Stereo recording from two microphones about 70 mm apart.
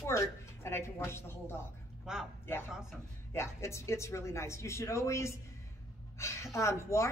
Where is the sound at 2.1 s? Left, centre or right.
Centre.